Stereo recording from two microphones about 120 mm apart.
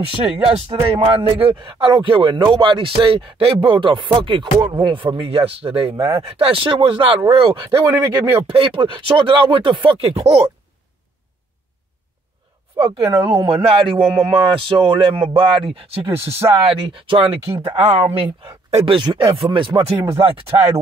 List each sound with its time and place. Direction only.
0.2 s speech: 50° right (ahead or behind)
5.9 s speech: 25° right (ahead or behind)
6.2 s speech: 50° right (ahead or behind)
7.8 s speech: 25° right (ahead or behind)
8.5 s speech: 45° right (ahead or behind)
12.7 s speech: 50° right (ahead or behind)
18.7 s speech: 60° right (ahead or behind)
18.9 s speech: 40° right (ahead or behind)